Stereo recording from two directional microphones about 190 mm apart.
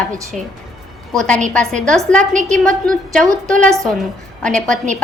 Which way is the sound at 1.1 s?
5° left (ahead or behind).